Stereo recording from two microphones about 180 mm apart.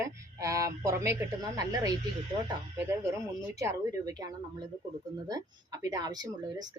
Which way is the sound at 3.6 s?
20° right (ahead or behind).